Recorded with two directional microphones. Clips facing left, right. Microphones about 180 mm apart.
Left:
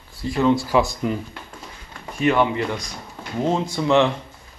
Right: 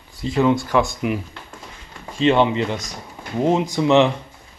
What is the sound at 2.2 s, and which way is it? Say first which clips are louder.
Speech: right 2 dB; 25° right (ahead or behind).